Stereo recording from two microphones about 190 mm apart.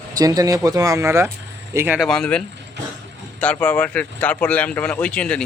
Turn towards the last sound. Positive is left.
turn(degrees=5)  # may be behind; listen again after turning